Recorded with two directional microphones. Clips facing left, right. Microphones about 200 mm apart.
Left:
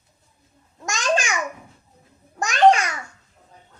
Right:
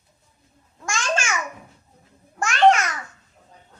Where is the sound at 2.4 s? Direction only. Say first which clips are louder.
Left 1 dB; 15° left (ahead or behind).